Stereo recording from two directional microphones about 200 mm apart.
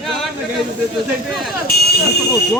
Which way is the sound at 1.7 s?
50° left (ahead or behind).